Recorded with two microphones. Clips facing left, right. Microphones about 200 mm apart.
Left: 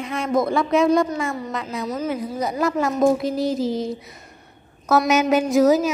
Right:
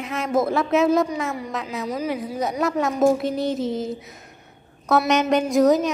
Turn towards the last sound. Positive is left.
turn(degrees=5)  # may be behind; listen again after turning